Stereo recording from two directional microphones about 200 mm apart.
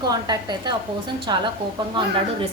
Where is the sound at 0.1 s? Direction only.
20° right (ahead or behind).